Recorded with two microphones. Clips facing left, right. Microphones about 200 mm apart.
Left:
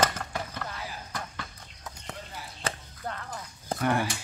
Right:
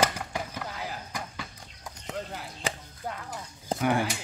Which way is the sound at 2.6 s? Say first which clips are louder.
Even; 10° right (ahead or behind).